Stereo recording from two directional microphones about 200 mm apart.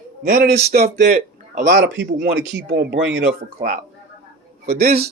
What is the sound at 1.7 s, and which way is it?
Speech, 60° right (ahead or behind).